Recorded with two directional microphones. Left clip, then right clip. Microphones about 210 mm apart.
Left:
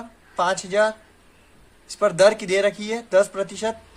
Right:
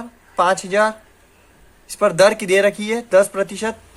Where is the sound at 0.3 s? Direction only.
25° right (ahead or behind).